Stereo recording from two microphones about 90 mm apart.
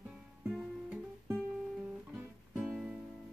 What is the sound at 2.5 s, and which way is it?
Music, 5° right (ahead or behind).